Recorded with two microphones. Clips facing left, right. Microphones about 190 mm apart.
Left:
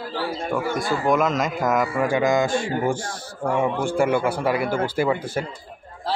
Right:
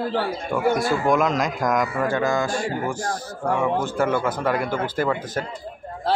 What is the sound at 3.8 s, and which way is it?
A man's voice, 10° left (ahead or behind).